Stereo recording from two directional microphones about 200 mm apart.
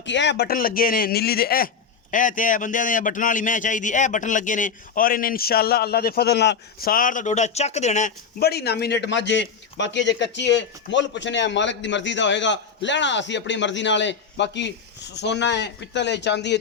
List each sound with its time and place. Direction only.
0.0 s speech: 60° left (ahead or behind); by 8.1 s 35° left (ahead or behind)
8.4 s a man's voice: 55° left (ahead or behind)